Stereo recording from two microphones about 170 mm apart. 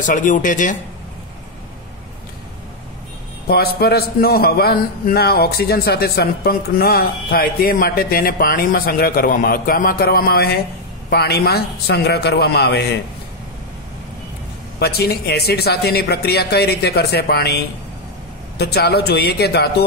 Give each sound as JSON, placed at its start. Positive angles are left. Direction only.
{"t": 0.0, "sound": "speech", "side_deg": 50}
{"t": 3.4, "sound": "a man's voice", "side_deg": 65}
{"t": 14.8, "sound": "speech", "side_deg": 70}